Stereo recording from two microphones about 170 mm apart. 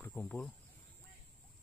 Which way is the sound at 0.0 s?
10° left (ahead or behind).